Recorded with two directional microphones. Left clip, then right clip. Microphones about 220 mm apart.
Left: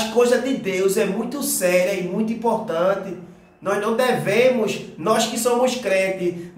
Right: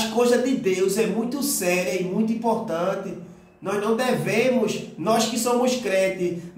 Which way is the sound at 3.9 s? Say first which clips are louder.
Left 4 dB; 15° left (ahead or behind).